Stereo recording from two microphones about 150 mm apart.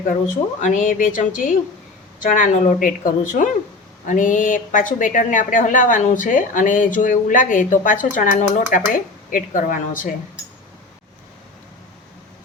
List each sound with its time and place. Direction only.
0.6 s a woman's voice: 60° left (ahead or behind)